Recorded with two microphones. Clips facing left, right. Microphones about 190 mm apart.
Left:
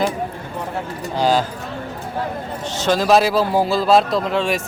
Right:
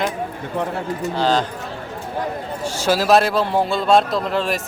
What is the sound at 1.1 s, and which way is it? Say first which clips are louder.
Speech: left 2 dB; 10° left (ahead or behind).